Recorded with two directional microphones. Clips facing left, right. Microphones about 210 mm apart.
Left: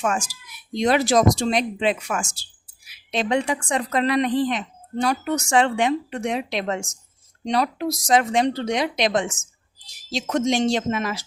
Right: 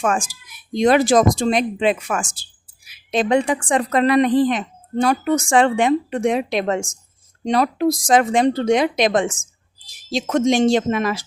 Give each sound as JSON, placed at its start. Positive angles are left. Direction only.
{"t": 0.3, "sound": "speech", "side_deg": -50}